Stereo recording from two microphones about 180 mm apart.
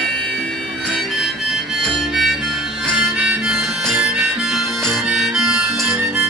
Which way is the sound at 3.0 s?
Centre (ahead or behind).